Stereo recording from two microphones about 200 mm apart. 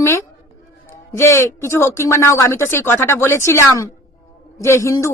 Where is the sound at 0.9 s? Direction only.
15° left (ahead or behind).